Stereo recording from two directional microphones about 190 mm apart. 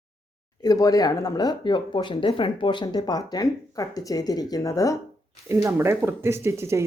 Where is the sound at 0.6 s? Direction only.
20° left (ahead or behind).